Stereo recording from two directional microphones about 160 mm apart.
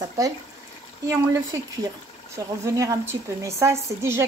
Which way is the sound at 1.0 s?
20° right (ahead or behind).